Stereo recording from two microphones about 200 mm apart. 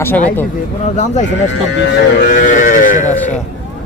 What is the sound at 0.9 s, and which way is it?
Speech, 35° left (ahead or behind).